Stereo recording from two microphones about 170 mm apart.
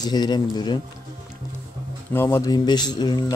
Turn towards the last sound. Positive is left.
turn(degrees=25)  # may be behind; listen again after turning